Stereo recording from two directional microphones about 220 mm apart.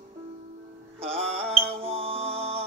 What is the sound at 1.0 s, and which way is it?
Music, 25° right (ahead or behind).